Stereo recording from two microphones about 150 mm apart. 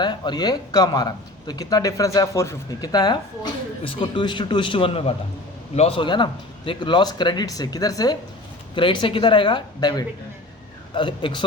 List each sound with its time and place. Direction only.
0.0 s speech: 30° left (ahead or behind)